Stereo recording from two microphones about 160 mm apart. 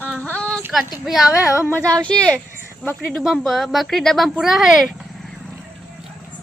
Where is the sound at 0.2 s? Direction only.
10° left (ahead or behind).